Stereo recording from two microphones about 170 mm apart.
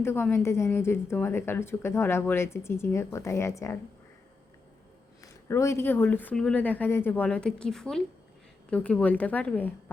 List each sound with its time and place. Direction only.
0.0 s speech: 15° left (ahead or behind)
5.2 s speech: 15° left (ahead or behind)